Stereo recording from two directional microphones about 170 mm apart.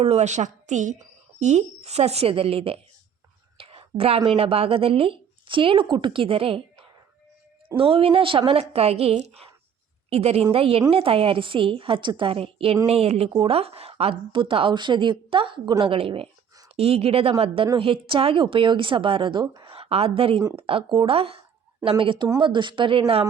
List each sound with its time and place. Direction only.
0.0 s a woman's voice: 40° right (ahead or behind)
3.6 s whispering: 35° right (ahead or behind)
4.3 s a woman's voice: 35° right (ahead or behind)
7.7 s a woman's voice: 30° right (ahead or behind)